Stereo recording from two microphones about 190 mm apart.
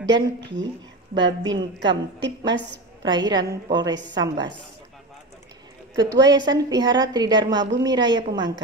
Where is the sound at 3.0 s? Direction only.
25° right (ahead or behind).